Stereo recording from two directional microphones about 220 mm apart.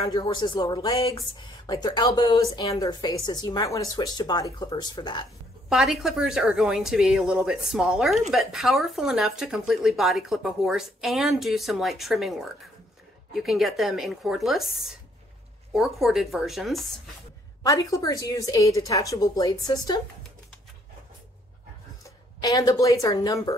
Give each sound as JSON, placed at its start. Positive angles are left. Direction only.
{"t": 0.1, "sound": "speech", "side_deg": 20}
{"t": 5.7, "sound": "a woman's voice", "side_deg": 0}
{"t": 17.6, "sound": "a woman's voice", "side_deg": 15}
{"t": 22.0, "sound": "speech", "side_deg": 15}